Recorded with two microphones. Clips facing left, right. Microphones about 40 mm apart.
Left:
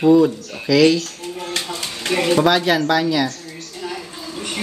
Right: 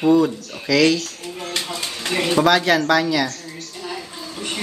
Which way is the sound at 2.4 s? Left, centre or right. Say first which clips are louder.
Even; centre.